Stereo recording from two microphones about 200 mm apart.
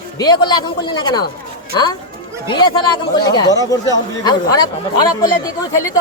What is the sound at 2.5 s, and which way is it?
Speech, 25° left (ahead or behind).